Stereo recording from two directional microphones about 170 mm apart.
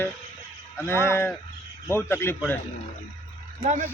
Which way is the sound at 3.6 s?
45° right (ahead or behind).